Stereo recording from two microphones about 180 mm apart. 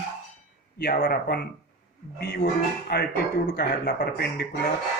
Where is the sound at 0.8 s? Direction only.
55° left (ahead or behind).